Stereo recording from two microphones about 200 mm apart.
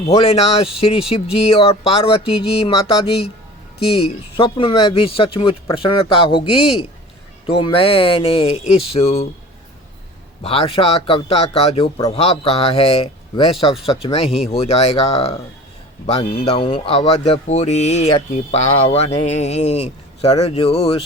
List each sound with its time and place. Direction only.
0.1 s speech: 30° left (ahead or behind)
10.4 s speech: 30° left (ahead or behind)